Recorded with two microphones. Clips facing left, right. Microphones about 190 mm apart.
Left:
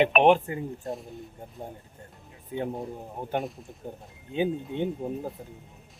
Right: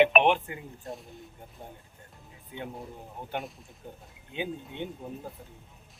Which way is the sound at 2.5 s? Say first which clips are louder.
Left 8 dB; 35° left (ahead or behind).